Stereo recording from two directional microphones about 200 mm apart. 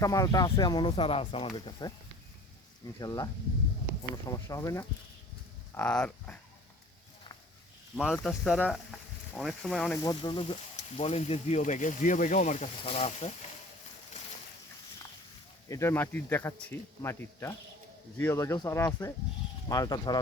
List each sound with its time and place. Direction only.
0.0 s speech: 15° left (ahead or behind)
3.0 s speech: 20° left (ahead or behind)
8.1 s speech: centre (ahead or behind)
9.9 s speech: 15° left (ahead or behind); by 13.3 s 35° left (ahead or behind)
15.7 s speech: 10° left (ahead or behind)